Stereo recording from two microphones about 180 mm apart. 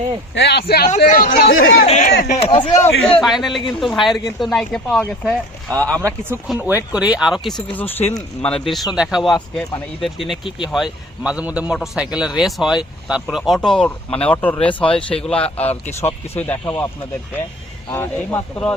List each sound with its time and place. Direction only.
0.3 s speech: 70° left (ahead or behind)
0.9 s speech: 40° left (ahead or behind)
1.5 s speech: 90° left
1.8 s speech: 45° left (ahead or behind); by 2.7 s 30° left (ahead or behind)
2.8 s speech: 5° left (ahead or behind)
6.0 s speech: 15° right (ahead or behind); by 16.8 s 10° left (ahead or behind)
17.9 s speech: 10° left (ahead or behind)